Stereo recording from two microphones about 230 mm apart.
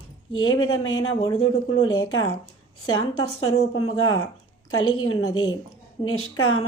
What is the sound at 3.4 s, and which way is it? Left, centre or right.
Speech, left.